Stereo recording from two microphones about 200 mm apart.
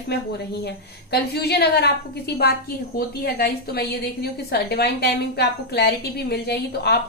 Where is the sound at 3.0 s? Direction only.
50° left (ahead or behind).